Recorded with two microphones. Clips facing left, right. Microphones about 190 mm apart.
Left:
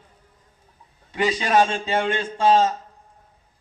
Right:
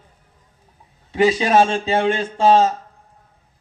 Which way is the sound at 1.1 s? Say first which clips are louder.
Right 5 dB; 25° right (ahead or behind).